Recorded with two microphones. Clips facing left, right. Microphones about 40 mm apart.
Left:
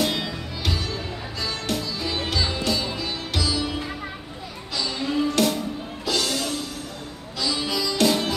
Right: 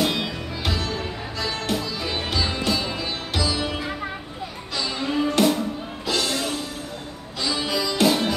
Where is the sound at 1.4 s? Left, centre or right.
Centre.